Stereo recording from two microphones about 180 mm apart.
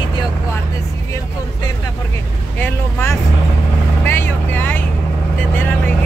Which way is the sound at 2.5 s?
10° left (ahead or behind).